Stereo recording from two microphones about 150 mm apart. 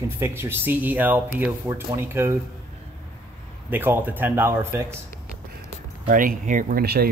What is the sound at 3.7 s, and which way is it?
Speech, 15° right (ahead or behind).